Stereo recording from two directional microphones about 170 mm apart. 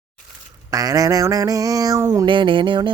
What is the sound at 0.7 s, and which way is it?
Speech, 20° right (ahead or behind).